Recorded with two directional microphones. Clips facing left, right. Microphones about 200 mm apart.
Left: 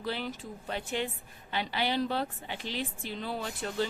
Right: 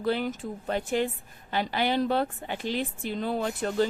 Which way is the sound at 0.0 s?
50° right (ahead or behind).